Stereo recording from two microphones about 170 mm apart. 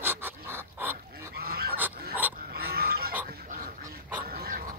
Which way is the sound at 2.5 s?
65° right (ahead or behind).